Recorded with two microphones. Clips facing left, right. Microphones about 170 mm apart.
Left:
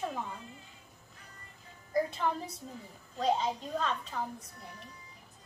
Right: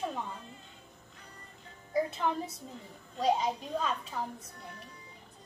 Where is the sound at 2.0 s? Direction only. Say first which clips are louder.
Even; centre (ahead or behind).